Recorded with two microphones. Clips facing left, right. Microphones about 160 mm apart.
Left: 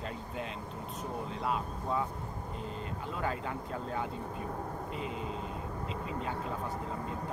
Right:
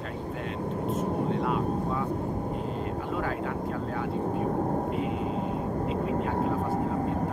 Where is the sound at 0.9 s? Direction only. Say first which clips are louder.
Right 11 dB; 50° right (ahead or behind).